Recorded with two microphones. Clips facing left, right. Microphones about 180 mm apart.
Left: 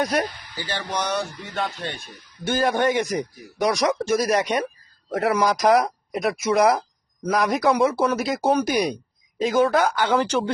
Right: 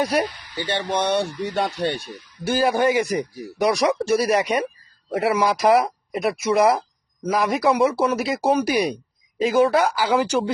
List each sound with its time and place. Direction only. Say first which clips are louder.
0.0 s speech: right 2 dB; 5° right (ahead or behind)
0.9 s speech: right 4 dB; 30° right (ahead or behind)
2.4 s speech: right 2 dB; 5° right (ahead or behind)